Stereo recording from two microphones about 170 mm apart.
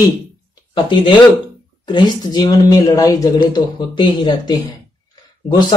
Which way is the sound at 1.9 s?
25° left (ahead or behind).